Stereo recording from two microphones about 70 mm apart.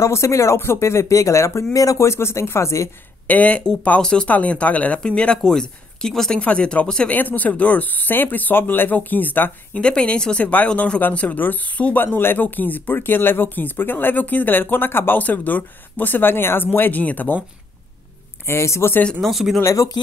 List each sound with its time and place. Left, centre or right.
0.0 s speech: left
3.3 s speech: left
4.3 s speech: left
9.8 s speech: centre
18.5 s speech: left
19.2 s speech: centre
19.6 s speech: left